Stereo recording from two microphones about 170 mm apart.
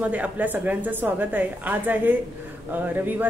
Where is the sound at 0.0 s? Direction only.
10° right (ahead or behind).